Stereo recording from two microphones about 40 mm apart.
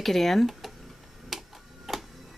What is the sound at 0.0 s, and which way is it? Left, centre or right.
Speech, centre.